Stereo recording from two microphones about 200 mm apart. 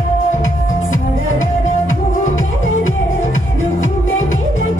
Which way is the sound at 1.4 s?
80° left.